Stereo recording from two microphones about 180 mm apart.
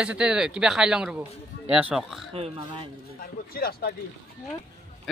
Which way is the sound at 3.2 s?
55° left (ahead or behind).